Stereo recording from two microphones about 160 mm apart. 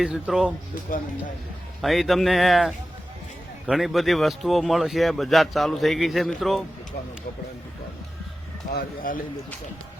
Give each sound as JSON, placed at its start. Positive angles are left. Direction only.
{"t": 0.0, "sound": "speech", "side_deg": -5}
{"t": 0.9, "sound": "a man's voice", "side_deg": 55}
{"t": 1.8, "sound": "speech", "side_deg": 0}
{"t": 8.7, "sound": "a man's voice", "side_deg": 60}